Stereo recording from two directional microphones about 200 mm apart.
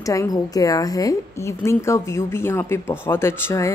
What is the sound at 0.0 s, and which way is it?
A woman's voice, 15° left (ahead or behind).